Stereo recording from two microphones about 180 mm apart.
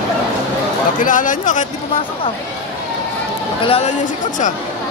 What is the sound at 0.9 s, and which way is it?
Speech, 45° left (ahead or behind).